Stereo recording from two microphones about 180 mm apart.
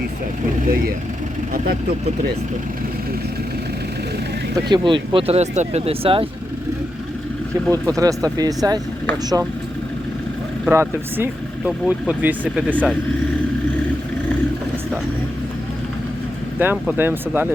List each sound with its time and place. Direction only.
4.7 s speech: 25° right (ahead or behind)
7.7 s speech: 20° right (ahead or behind)
10.7 s speech: 10° right (ahead or behind)
12.7 s speech: 5° left (ahead or behind)
16.6 s speech: 10° right (ahead or behind)